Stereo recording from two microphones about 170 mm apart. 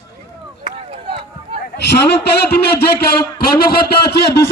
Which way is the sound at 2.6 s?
70° left (ahead or behind).